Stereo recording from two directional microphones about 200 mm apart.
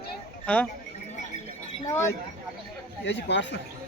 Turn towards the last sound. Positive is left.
turn(degrees=60)  # may be behind; listen again after turning